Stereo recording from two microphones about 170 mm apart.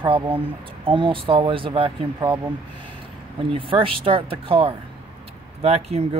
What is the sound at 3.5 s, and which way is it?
Speech, 30° right (ahead or behind).